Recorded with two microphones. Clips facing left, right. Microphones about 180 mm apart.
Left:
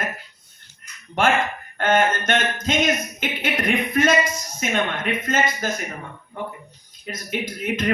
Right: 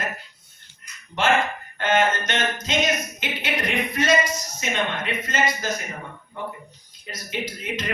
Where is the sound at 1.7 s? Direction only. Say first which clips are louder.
Left 2 dB; 50° left (ahead or behind).